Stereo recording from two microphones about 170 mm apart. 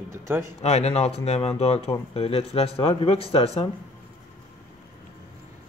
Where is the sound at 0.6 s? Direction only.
40° left (ahead or behind).